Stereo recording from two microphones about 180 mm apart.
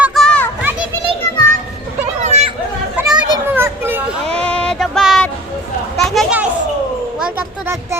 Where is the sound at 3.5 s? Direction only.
10° right (ahead or behind).